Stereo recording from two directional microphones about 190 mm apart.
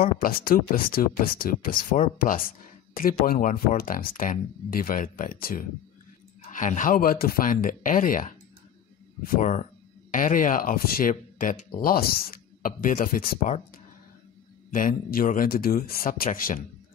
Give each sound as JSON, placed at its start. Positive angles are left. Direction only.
{"t": 0.0, "sound": "speech", "side_deg": 50}
{"t": 14.7, "sound": "speech", "side_deg": 45}